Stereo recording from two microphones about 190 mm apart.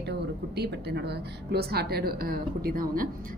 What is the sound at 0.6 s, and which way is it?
A woman's voice, 60° right (ahead or behind).